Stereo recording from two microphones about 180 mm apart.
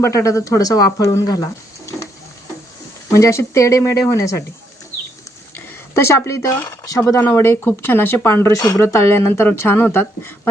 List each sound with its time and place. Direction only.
0.0 s speech: 15° left (ahead or behind)
3.1 s speech: 15° left (ahead or behind)
5.9 s speech: 15° left (ahead or behind)